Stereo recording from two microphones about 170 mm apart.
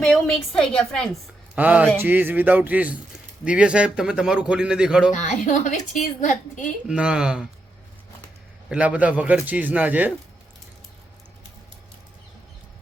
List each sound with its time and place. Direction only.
0.0 s a man's voice: 5° left (ahead or behind)
1.5 s a man's voice: 10° right (ahead or behind)
5.1 s a woman's voice: 45° left (ahead or behind)
6.8 s a man's voice: 5° right (ahead or behind)
8.7 s a man's voice: 5° right (ahead or behind)